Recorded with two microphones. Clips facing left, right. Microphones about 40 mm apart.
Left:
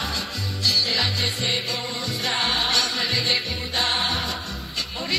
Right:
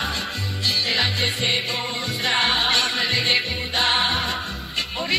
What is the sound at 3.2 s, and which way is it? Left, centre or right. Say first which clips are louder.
Music: right 3 dB; right.